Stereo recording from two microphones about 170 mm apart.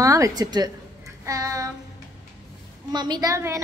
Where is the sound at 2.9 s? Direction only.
25° right (ahead or behind).